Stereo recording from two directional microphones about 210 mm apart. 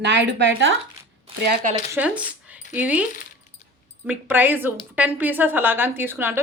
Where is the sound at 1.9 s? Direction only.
5° right (ahead or behind).